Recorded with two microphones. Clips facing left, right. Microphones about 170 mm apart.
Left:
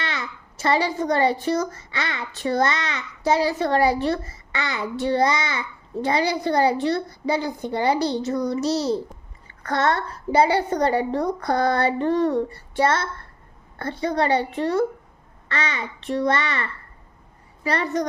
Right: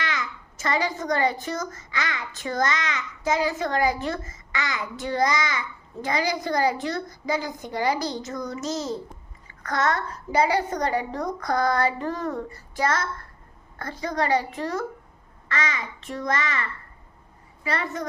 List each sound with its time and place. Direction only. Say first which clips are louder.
0.0 s a child's voice: even; 30° left (ahead or behind)